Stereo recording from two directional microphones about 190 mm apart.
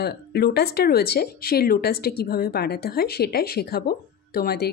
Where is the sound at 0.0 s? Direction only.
55° left (ahead or behind).